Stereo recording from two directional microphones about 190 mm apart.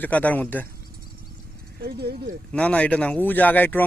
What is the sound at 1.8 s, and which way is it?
Speech, 55° right (ahead or behind).